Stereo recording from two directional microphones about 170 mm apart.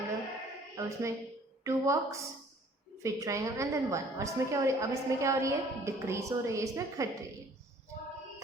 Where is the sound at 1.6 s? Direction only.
20° right (ahead or behind).